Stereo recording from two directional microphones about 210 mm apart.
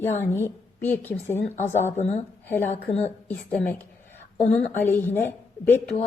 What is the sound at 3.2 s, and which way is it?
A woman's voice, 10° left (ahead or behind).